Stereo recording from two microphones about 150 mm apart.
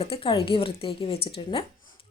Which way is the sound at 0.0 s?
35° left (ahead or behind).